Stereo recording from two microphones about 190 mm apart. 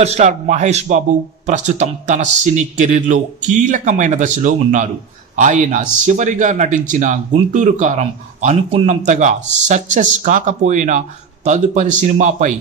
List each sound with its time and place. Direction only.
0.0 s speech: 40° right (ahead or behind)